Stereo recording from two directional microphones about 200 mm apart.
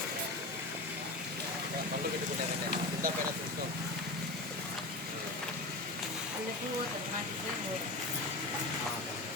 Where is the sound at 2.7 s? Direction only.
45° right (ahead or behind).